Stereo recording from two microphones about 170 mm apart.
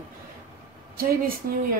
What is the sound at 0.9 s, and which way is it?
Speech, 60° right (ahead or behind).